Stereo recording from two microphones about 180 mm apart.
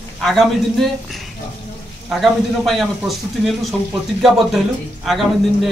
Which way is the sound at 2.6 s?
Centre (ahead or behind).